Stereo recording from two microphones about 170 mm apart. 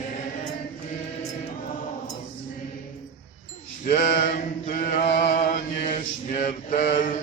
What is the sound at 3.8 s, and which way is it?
Mantra, 45° left (ahead or behind).